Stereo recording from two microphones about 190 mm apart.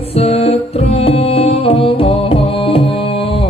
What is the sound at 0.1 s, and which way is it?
Music, 30° left (ahead or behind).